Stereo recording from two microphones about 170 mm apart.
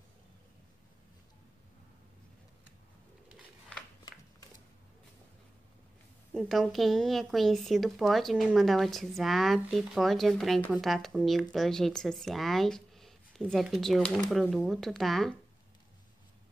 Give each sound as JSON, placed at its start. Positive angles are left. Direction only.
{"t": 6.3, "sound": "speech", "side_deg": 0}